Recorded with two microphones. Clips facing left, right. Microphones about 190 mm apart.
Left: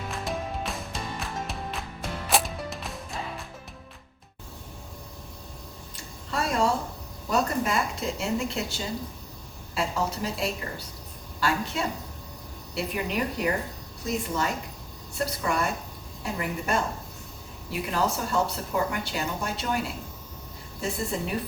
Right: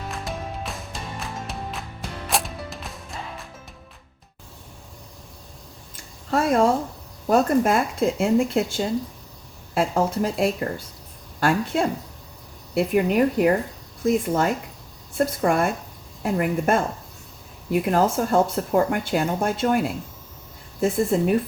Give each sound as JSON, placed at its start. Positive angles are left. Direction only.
{"t": 0.1, "sound": "music", "side_deg": 0}
{"t": 6.3, "sound": "speech", "side_deg": -50}
{"t": 20.8, "sound": "speech", "side_deg": -50}